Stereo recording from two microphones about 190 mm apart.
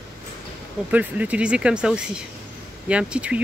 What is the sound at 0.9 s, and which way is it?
Speech, 5° right (ahead or behind).